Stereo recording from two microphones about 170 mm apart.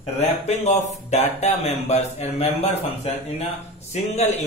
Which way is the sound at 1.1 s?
40° left (ahead or behind).